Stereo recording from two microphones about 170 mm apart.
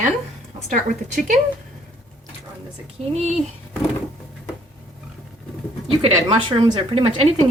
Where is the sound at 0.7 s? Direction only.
50° right (ahead or behind).